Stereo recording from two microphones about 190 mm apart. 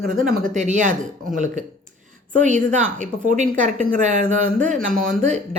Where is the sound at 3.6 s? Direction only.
40° right (ahead or behind).